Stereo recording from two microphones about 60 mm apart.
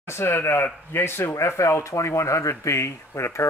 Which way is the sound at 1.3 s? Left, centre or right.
Left.